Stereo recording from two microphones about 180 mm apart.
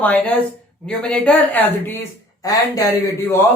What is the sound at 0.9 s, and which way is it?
Speech, 5° left (ahead or behind).